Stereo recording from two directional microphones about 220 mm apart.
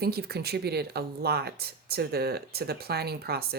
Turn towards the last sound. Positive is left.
turn(degrees=-45)  # may be behind; listen again after turning